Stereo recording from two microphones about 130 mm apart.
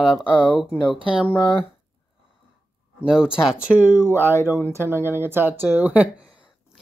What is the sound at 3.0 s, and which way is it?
Speech, 5° right (ahead or behind).